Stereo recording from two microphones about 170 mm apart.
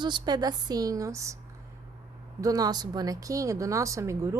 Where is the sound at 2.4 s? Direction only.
20° right (ahead or behind).